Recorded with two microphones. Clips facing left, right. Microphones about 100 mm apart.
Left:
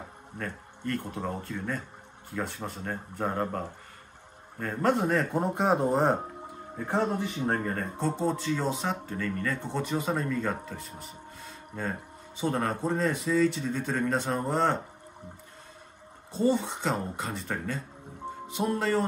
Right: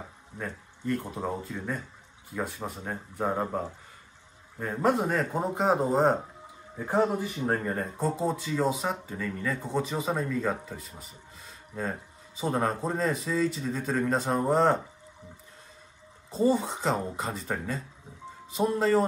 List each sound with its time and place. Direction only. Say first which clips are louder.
0.4 s speech: even; 5° right (ahead or behind)
16.3 s speech: right 1 dB; 5° right (ahead or behind)
18.2 s music: left 7 dB; 55° left (ahead or behind)
18.8 s speech: right 4 dB; centre (ahead or behind)